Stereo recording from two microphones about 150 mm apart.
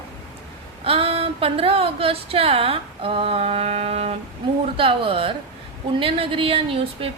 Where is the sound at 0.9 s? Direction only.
40° right (ahead or behind).